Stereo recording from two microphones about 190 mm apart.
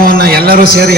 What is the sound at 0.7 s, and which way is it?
Speech, 65° left (ahead or behind).